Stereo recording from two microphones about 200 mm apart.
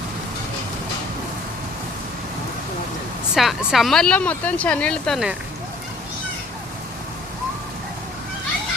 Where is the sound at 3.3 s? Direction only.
Centre (ahead or behind).